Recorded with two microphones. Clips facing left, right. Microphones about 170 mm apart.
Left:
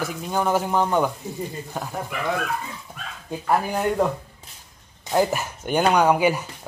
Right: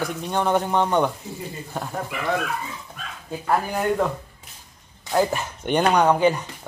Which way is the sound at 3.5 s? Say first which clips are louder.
Even; 10° left (ahead or behind).